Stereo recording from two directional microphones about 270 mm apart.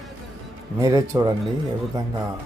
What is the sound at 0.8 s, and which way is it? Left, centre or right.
Speech, centre.